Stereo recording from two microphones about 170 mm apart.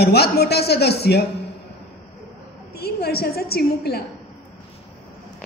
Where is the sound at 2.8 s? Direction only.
65° left (ahead or behind).